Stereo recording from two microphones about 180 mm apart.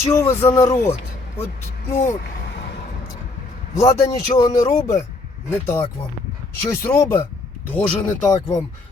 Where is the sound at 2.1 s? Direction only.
55° left (ahead or behind).